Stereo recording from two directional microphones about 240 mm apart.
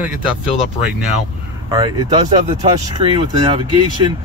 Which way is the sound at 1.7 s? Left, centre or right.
Centre.